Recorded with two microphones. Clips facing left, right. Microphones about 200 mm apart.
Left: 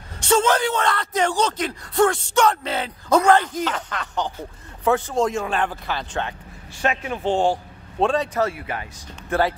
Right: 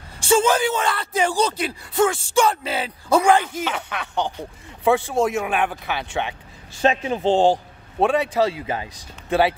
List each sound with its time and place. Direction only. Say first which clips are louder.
0.2 s speech: right 1 dB; 10° right (ahead or behind)
6.8 s a man's voice: right 4 dB; 25° right (ahead or behind)
8.0 s speech: right 2 dB; 10° right (ahead or behind)